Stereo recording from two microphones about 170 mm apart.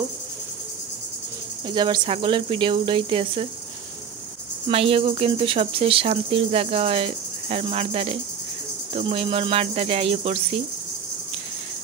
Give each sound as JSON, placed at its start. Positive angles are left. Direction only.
{"t": 1.7, "sound": "speech", "side_deg": -25}
{"t": 4.6, "sound": "speech", "side_deg": -35}